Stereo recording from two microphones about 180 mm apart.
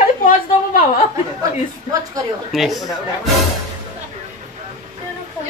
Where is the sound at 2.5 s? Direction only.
Centre (ahead or behind).